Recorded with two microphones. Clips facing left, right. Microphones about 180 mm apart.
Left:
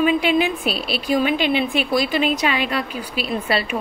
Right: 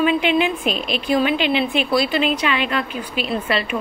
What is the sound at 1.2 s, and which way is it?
A woman's voice, 40° left (ahead or behind).